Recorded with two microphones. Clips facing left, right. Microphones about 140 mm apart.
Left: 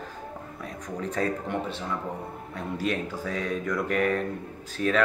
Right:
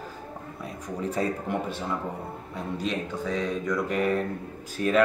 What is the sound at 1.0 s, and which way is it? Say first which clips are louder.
Speech: right 1 dB; 5° right (ahead or behind).